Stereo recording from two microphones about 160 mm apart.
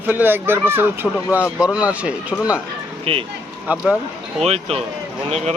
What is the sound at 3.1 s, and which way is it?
Speech, 35° right (ahead or behind).